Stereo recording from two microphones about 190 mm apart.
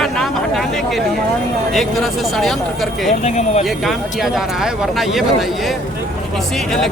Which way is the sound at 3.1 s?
35° left (ahead or behind).